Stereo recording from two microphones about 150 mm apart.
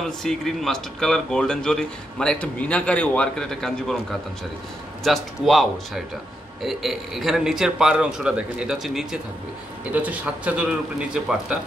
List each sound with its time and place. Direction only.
0.2 s speech: centre (ahead or behind)
5.0 s speech: centre (ahead or behind)